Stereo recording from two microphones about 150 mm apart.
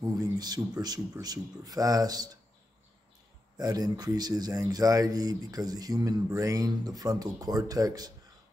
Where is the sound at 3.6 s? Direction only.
25° right (ahead or behind).